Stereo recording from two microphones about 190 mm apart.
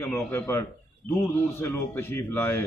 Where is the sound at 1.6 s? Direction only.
15° left (ahead or behind).